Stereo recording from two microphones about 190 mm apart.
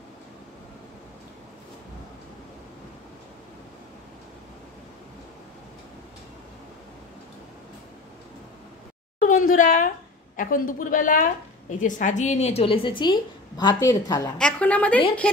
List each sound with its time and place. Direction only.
9.2 s a woman's voice: 45° left (ahead or behind); by 14.3 s 20° left (ahead or behind)
14.4 s a woman's voice: 5° left (ahead or behind)